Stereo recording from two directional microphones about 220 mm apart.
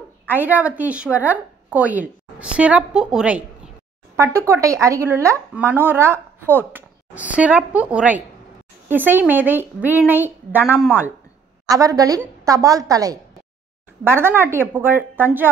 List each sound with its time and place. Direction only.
0.3 s a woman's voice: 10° right (ahead or behind)